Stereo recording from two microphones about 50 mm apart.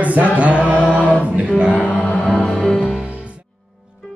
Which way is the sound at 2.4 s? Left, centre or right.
Centre.